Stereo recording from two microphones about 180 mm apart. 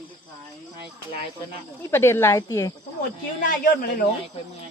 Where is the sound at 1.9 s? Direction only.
15° left (ahead or behind).